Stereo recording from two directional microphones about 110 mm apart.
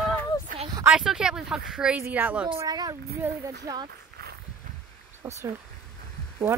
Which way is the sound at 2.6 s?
35° right (ahead or behind).